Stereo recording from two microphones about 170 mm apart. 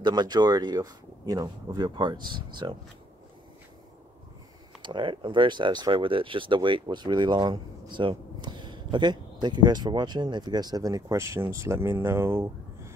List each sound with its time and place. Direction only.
0.0 s speech: 25° right (ahead or behind)
4.8 s speech: 30° right (ahead or behind)